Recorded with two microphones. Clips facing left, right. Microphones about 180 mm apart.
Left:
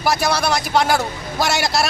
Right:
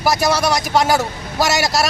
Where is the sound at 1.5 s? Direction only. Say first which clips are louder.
Right 1 dB; 40° right (ahead or behind).